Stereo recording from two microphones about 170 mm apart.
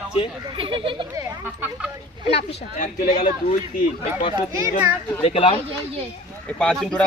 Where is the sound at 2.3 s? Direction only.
35° left (ahead or behind).